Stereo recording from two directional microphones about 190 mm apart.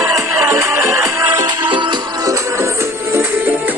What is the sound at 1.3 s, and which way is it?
Music, 25° right (ahead or behind).